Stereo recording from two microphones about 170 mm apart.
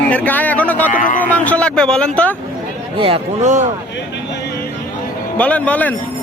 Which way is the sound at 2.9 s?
30° right (ahead or behind).